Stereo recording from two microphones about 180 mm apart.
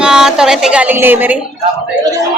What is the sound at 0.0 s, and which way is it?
A woman's voice, 5° right (ahead or behind).